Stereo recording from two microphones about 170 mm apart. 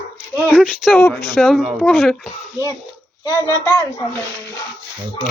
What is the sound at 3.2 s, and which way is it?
Speech, 20° left (ahead or behind).